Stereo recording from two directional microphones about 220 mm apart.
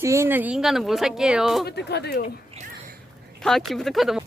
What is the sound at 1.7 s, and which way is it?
Speech, 50° left (ahead or behind).